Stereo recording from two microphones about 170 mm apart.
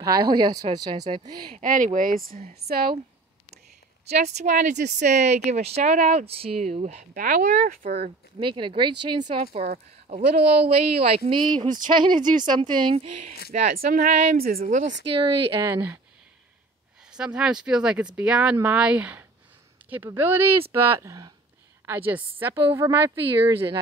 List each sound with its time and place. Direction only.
0.0 s speech: 25° right (ahead or behind)
1.6 s a woman's voice: 50° right (ahead or behind)
4.3 s speech: 45° right (ahead or behind)
7.9 s speech: 30° right (ahead or behind)
12.0 s speech: 25° right (ahead or behind)
13.7 s a woman's voice: 60° right (ahead or behind)
15.6 s a woman's voice: 15° right (ahead or behind)
17.1 s a woman's voice: 5° right (ahead or behind)